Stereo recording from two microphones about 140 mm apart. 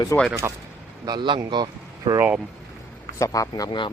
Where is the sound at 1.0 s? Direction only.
30° right (ahead or behind).